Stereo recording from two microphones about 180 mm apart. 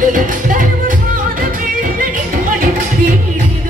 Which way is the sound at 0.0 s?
45° right (ahead or behind).